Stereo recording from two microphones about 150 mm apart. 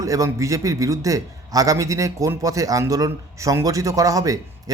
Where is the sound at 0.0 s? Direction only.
20° right (ahead or behind).